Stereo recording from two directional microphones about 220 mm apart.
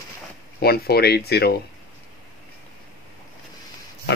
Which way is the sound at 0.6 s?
45° left (ahead or behind).